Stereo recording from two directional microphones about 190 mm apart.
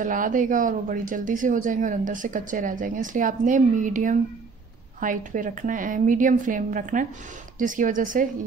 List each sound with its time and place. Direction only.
0.0 s speech: 45° right (ahead or behind)